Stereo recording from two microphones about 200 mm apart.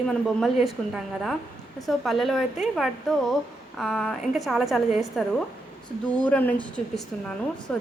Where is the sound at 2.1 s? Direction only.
Centre (ahead or behind).